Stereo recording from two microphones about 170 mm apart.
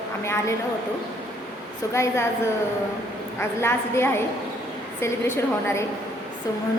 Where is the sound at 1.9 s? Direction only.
15° left (ahead or behind).